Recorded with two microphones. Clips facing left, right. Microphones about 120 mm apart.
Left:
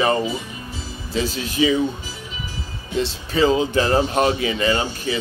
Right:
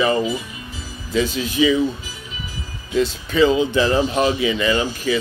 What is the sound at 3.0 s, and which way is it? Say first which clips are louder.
Speech: right 3 dB; 35° left (ahead or behind).